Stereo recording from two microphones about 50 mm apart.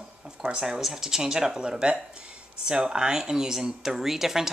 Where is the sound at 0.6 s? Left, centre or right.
Centre.